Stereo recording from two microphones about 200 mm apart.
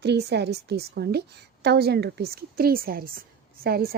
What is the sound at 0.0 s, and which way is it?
A woman's voice, 55° right (ahead or behind).